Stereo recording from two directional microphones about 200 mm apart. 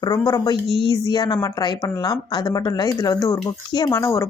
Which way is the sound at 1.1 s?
20° left (ahead or behind).